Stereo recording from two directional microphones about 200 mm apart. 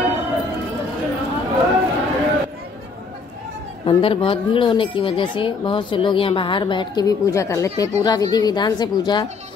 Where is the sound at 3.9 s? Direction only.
25° left (ahead or behind).